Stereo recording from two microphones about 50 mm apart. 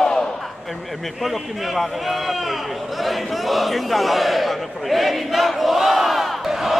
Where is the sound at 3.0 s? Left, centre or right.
Centre.